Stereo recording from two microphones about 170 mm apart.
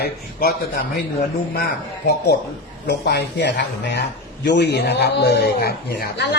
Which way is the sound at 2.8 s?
75° left (ahead or behind).